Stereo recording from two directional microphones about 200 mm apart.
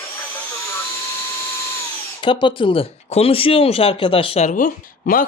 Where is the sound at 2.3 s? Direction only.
25° left (ahead or behind).